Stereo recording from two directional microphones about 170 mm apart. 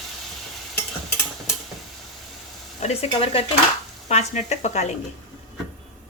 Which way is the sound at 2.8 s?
35° left (ahead or behind).